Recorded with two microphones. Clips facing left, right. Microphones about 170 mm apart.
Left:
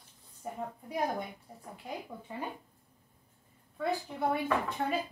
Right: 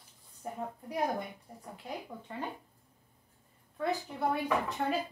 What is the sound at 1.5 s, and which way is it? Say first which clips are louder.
Speech: right 1 dB; centre (ahead or behind).